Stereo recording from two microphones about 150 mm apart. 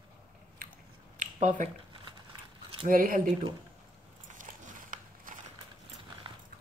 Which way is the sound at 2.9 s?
65° right (ahead or behind).